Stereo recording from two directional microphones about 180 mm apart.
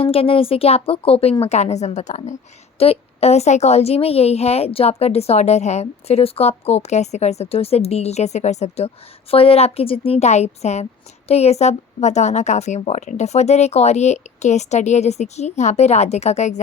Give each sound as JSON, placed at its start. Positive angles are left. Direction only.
{"t": 0.0, "sound": "a woman's voice", "side_deg": 30}